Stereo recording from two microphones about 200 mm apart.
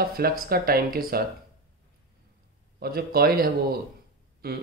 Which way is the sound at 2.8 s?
50° right (ahead or behind).